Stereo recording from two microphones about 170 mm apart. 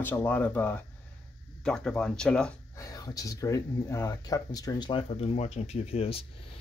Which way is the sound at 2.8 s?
20° left (ahead or behind).